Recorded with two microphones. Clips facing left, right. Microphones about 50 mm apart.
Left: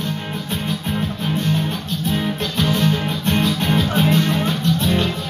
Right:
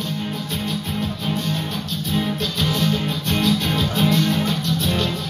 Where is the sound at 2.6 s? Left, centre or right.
Left.